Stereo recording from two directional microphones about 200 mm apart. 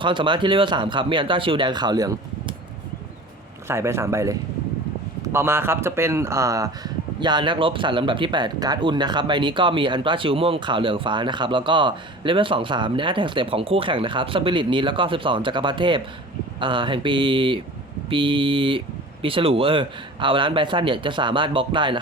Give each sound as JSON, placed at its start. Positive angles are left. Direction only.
{"t": 0.0, "sound": "speech", "side_deg": -25}
{"t": 3.7, "sound": "speech", "side_deg": -15}